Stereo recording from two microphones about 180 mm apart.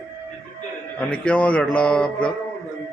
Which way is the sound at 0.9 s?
5° left (ahead or behind).